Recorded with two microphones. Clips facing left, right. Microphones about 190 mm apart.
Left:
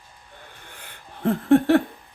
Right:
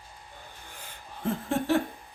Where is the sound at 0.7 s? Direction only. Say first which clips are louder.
Even; 65° left (ahead or behind).